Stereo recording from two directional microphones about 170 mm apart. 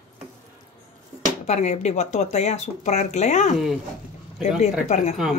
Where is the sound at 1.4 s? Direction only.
40° left (ahead or behind).